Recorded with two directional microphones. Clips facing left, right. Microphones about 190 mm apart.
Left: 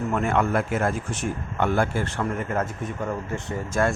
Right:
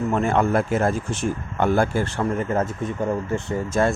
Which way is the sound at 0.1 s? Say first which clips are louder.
Right 3 dB; 30° right (ahead or behind).